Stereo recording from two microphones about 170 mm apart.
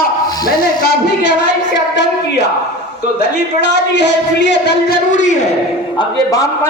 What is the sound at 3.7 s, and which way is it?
Speech, 90° left.